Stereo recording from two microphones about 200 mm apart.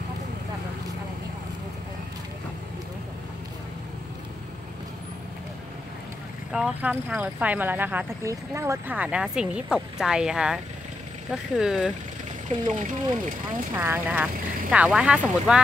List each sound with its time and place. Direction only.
6.5 s speech: 5° right (ahead or behind)
12.4 s speech: 40° right (ahead or behind)
13.7 s speech: 10° right (ahead or behind)